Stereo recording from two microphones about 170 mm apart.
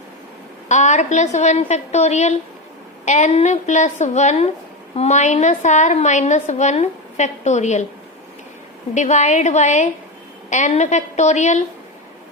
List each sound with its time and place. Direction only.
0.7 s a woman's voice: 45° left (ahead or behind)
9.0 s a woman's voice: 45° left (ahead or behind)